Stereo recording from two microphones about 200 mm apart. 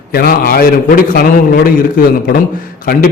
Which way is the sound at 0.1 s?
50° left (ahead or behind).